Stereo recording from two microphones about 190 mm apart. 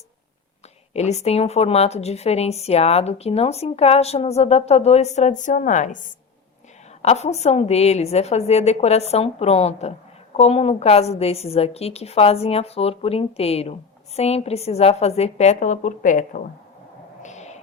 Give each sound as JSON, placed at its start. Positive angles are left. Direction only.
{"t": 0.9, "sound": "a woman's voice", "side_deg": 35}
{"t": 7.0, "sound": "a woman's voice", "side_deg": 35}
{"t": 17.2, "sound": "a sound", "side_deg": 35}